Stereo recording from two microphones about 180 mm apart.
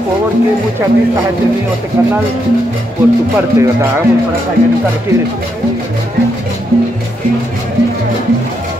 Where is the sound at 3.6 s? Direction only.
15° right (ahead or behind).